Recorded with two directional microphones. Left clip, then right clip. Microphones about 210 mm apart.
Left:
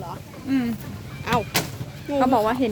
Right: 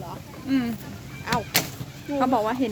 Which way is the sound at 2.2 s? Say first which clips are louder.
Left 3 dB; 5° left (ahead or behind).